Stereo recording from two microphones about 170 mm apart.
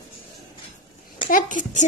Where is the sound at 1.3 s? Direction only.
50° left (ahead or behind).